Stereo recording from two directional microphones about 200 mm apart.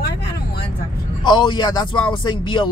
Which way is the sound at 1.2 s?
20° left (ahead or behind).